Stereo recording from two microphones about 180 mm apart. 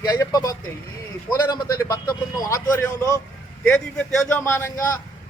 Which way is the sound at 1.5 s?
20° left (ahead or behind).